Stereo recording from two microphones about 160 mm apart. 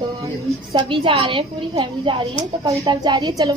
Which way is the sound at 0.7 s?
35° right (ahead or behind).